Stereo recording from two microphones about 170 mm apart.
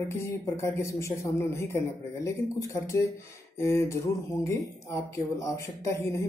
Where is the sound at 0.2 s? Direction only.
15° left (ahead or behind).